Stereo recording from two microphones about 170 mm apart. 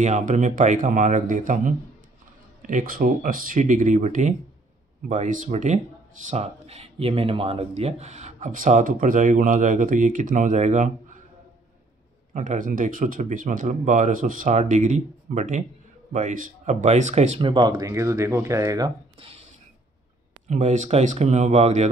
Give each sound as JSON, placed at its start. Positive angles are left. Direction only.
{"t": 0.0, "sound": "speech", "side_deg": -45}
{"t": 12.4, "sound": "speech", "side_deg": -50}
{"t": 20.4, "sound": "speech", "side_deg": -45}